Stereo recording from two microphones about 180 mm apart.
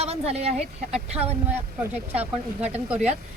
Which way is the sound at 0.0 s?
35° right (ahead or behind).